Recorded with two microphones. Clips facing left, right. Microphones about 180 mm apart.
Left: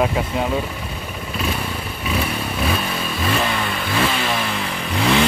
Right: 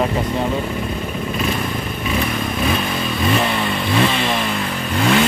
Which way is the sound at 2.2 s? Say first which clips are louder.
Right 3 dB; 10° left (ahead or behind).